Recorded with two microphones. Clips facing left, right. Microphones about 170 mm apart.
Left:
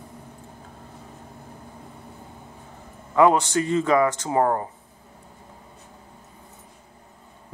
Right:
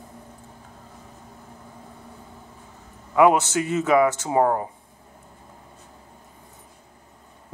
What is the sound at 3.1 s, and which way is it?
A man's voice, 10° right (ahead or behind).